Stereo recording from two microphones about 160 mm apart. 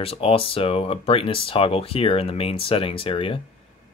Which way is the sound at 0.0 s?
35° left (ahead or behind).